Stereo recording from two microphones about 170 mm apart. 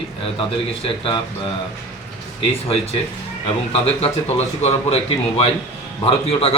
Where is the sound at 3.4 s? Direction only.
35° left (ahead or behind).